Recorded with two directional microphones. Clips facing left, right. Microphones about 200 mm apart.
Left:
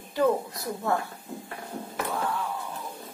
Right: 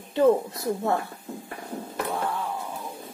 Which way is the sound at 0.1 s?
25° right (ahead or behind).